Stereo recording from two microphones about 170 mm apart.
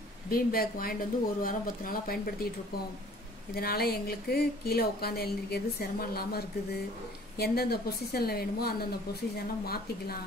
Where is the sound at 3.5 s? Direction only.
65° left (ahead or behind).